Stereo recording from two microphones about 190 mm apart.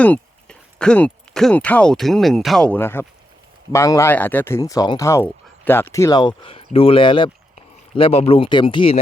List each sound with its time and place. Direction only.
0.0 s speech: 5° left (ahead or behind); by 9.0 s 25° left (ahead or behind)